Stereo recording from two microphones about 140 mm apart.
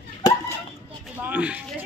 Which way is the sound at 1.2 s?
10° right (ahead or behind).